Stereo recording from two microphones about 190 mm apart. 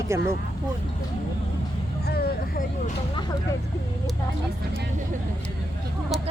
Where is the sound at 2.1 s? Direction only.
55° left (ahead or behind).